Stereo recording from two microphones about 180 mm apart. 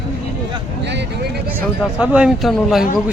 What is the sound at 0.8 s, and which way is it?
Speech, 75° right (ahead or behind).